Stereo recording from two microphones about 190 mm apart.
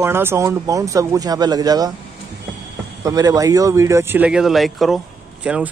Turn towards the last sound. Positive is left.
turn(degrees=-5)  # may be behind; listen again after turning